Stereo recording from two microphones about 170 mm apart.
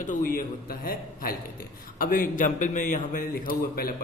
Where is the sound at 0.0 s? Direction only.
50° left (ahead or behind).